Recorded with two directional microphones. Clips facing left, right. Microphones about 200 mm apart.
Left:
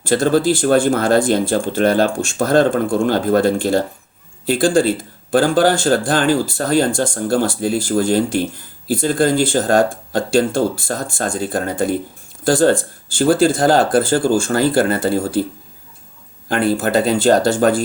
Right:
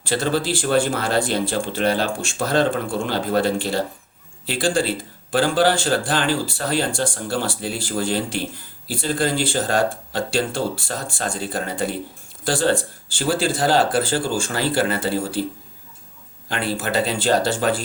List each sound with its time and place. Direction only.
0.0 s speech: 45° left (ahead or behind)
16.5 s speech: 45° left (ahead or behind)